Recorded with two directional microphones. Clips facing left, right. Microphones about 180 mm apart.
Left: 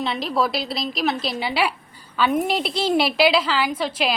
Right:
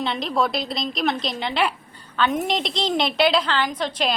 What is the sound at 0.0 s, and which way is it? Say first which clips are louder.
A woman's voice: even; centre (ahead or behind).